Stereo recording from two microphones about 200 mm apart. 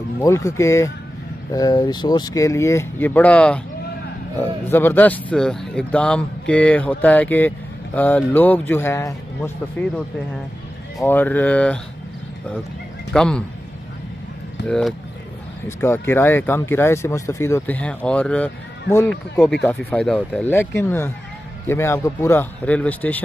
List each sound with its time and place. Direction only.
0.2 s a man's voice: 15° left (ahead or behind)
11.1 s a man's voice: 10° left (ahead or behind)
13.1 s speech: 5° left (ahead or behind)
14.7 s a man's voice: centre (ahead or behind)